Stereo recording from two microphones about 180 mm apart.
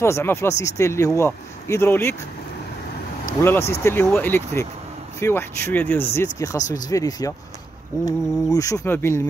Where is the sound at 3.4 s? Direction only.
15° left (ahead or behind).